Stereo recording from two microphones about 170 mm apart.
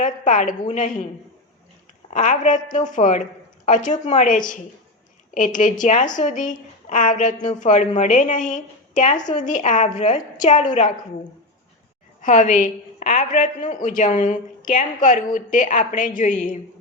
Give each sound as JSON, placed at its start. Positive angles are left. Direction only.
{"t": 0.0, "sound": "a woman's voice", "side_deg": 45}
{"t": 2.1, "sound": "a woman's voice", "side_deg": 45}
{"t": 5.8, "sound": "a woman's voice", "side_deg": 45}
{"t": 12.2, "sound": "a woman's voice", "side_deg": 50}